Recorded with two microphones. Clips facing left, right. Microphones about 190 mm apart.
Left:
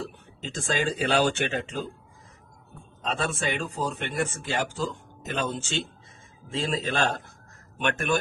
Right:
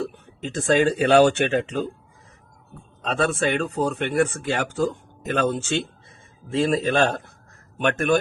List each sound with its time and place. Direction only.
0.0 s speech: 60° right (ahead or behind)
3.1 s speech: 60° right (ahead or behind)
7.8 s a man's voice: 50° right (ahead or behind)